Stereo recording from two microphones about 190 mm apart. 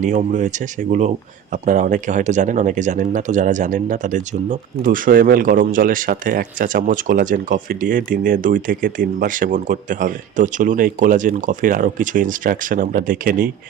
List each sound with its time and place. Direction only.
0.0 s speech: 40° right (ahead or behind)